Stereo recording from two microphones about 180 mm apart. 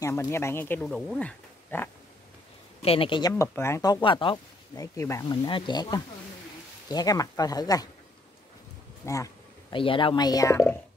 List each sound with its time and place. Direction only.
0.0 s speech: 15° left (ahead or behind)
2.8 s speech: 30° left (ahead or behind)
4.9 s speech: 15° left (ahead or behind)
9.0 s bee: 20° left (ahead or behind)
9.8 s speech: 30° left (ahead or behind)